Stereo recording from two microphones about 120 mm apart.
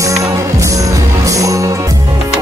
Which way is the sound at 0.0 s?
25° right (ahead or behind).